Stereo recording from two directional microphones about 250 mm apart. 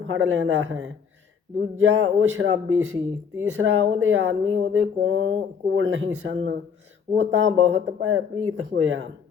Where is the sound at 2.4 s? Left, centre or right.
Right.